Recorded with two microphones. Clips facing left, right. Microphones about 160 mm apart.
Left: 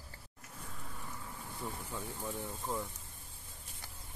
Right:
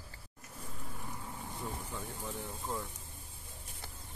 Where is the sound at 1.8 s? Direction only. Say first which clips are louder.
Left 1 dB; 15° left (ahead or behind).